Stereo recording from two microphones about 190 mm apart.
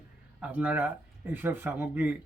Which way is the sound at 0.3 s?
10° right (ahead or behind).